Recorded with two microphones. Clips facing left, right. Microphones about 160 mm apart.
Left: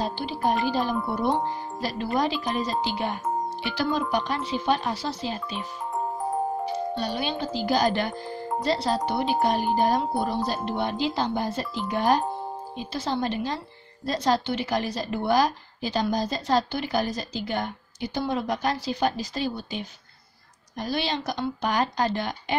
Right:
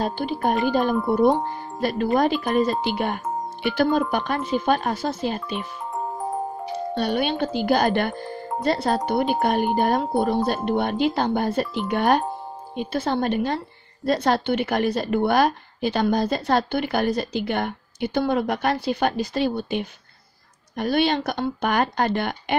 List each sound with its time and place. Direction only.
0.0 s a woman's voice: 55° right (ahead or behind)
7.0 s a woman's voice: 60° right (ahead or behind)